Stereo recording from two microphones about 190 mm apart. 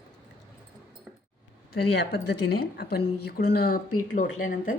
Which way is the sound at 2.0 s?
60° left (ahead or behind).